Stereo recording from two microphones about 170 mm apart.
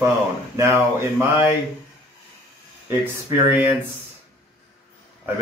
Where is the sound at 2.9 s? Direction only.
10° right (ahead or behind).